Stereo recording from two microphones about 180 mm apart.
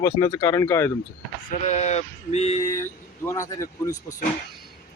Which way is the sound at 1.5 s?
35° left (ahead or behind).